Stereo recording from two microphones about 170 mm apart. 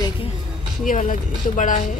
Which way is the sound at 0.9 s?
50° left (ahead or behind).